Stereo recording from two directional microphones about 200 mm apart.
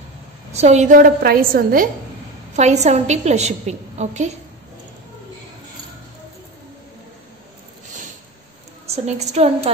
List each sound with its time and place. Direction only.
0.5 s a woman's voice: 35° right (ahead or behind)
2.5 s a woman's voice: 35° right (ahead or behind)
8.8 s a woman's voice: 30° right (ahead or behind)